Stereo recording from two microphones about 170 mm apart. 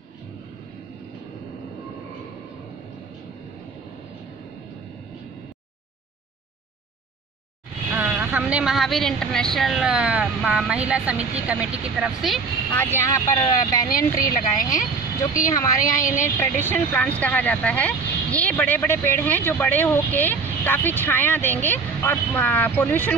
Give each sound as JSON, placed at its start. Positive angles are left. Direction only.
{"t": 8.0, "sound": "speech", "side_deg": -10}
{"t": 12.7, "sound": "speech", "side_deg": 10}
{"t": 13.8, "sound": "speech", "side_deg": 55}
{"t": 16.2, "sound": "speech", "side_deg": 15}